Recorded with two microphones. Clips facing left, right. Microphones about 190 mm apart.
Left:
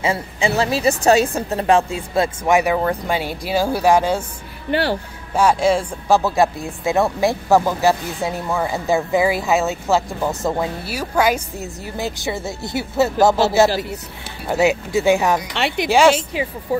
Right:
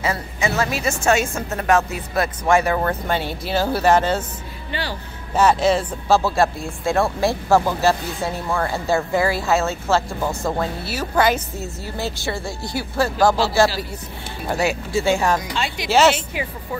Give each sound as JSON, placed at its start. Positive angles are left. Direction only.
{"t": 0.0, "sound": "a woman's voice", "side_deg": 30}
{"t": 4.6, "sound": "speech", "side_deg": 60}
{"t": 5.3, "sound": "speech", "side_deg": 10}
{"t": 15.5, "sound": "speech", "side_deg": 65}